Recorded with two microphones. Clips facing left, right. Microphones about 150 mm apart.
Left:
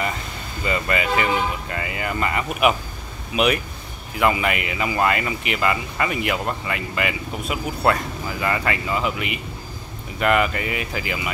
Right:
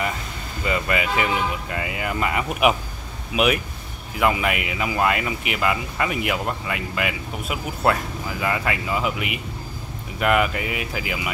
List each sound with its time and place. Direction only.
0.7 s speech: 5° right (ahead or behind)